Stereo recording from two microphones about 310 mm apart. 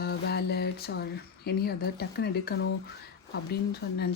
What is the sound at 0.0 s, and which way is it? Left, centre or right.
Music, left.